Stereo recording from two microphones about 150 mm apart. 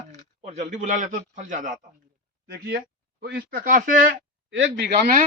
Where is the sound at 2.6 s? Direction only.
90° right; by 4.1 s 65° right (ahead or behind).